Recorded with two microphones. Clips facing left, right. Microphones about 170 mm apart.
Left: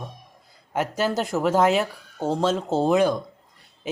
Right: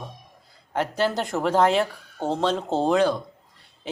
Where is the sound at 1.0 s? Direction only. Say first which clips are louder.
Left 1 dB; 5° left (ahead or behind).